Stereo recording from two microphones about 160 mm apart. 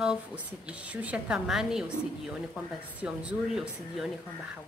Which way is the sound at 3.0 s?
5° right (ahead or behind).